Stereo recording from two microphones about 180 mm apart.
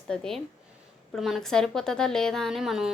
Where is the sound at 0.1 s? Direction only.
Centre (ahead or behind).